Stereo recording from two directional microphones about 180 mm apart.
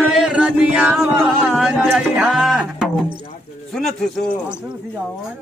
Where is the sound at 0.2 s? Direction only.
5° right (ahead or behind).